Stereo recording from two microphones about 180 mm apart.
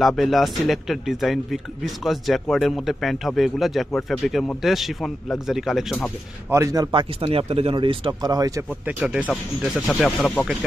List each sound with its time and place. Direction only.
0.0 s speech: centre (ahead or behind)
6.5 s speech: 20° right (ahead or behind)
9.0 s speech: 5° right (ahead or behind)